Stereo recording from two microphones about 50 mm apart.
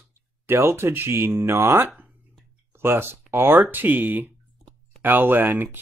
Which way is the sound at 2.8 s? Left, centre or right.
Right.